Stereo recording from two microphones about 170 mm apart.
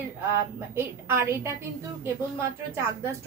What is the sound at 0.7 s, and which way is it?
Speech, 15° right (ahead or behind).